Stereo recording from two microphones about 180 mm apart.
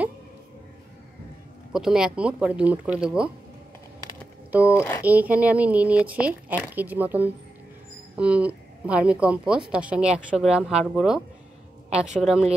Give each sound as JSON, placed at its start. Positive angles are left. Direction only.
{"t": 1.7, "sound": "speech", "side_deg": -5}
{"t": 4.5, "sound": "a sound", "side_deg": -10}
{"t": 5.0, "sound": "speech", "side_deg": -10}